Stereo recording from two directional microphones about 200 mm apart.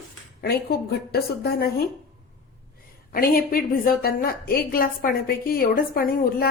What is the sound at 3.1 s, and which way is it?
A woman's voice, 45° left (ahead or behind).